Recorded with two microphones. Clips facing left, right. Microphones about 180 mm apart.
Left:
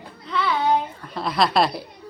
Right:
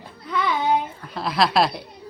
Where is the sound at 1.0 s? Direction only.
Centre (ahead or behind).